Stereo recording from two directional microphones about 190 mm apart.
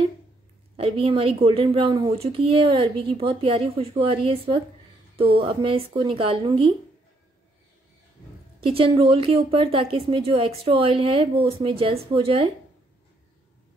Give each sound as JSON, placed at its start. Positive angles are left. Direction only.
{"t": 0.7, "sound": "speech", "side_deg": -30}
{"t": 8.5, "sound": "speech", "side_deg": -30}